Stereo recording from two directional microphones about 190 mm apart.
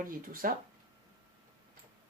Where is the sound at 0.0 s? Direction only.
50° right (ahead or behind).